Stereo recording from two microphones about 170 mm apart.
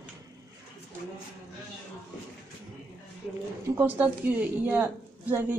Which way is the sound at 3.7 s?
10° right (ahead or behind).